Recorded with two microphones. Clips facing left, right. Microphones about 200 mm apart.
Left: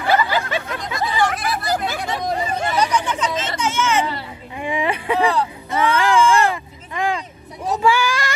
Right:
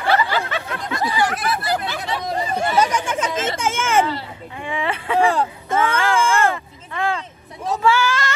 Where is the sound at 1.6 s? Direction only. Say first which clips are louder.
Left 1 dB; 45° left (ahead or behind).